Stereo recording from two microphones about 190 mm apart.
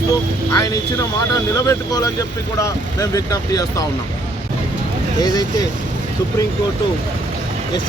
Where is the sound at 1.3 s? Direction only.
15° left (ahead or behind).